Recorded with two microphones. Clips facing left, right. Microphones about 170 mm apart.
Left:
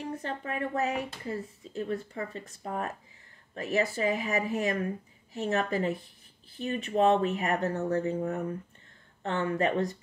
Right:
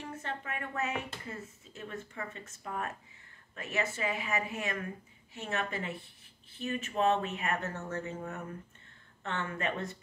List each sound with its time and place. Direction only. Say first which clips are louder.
0.0 s speech: left 5 dB; 35° left (ahead or behind)